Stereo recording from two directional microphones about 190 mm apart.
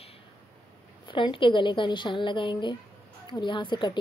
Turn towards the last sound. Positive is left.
turn(degrees=25)  # may be behind; listen again after turning